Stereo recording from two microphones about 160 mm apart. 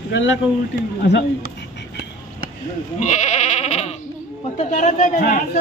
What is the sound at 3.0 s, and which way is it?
A man's voice, 45° left (ahead or behind).